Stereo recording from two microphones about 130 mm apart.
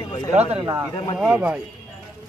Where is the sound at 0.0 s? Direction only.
30° left (ahead or behind).